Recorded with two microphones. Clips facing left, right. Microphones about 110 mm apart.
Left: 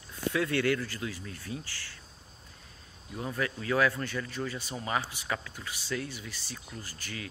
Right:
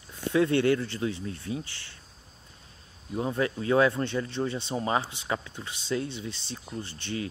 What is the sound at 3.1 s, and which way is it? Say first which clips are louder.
Speech: right 6 dB; 25° right (ahead or behind).